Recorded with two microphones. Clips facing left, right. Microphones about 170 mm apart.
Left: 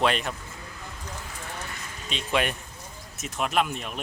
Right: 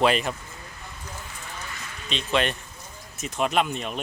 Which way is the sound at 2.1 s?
10° left (ahead or behind).